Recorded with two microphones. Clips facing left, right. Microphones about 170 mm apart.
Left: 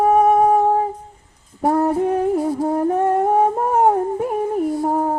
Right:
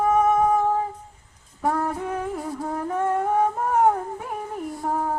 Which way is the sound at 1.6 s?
35° left (ahead or behind).